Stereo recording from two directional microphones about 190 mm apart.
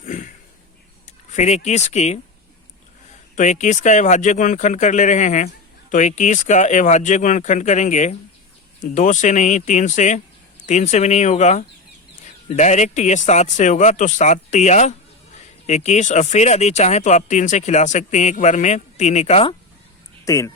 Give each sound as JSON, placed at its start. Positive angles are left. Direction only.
{"t": 0.0, "sound": "a sound", "side_deg": 45}
{"t": 1.0, "sound": "speech", "side_deg": 40}
{"t": 3.3, "sound": "speech", "side_deg": 40}
{"t": 20.2, "sound": "speech", "side_deg": 15}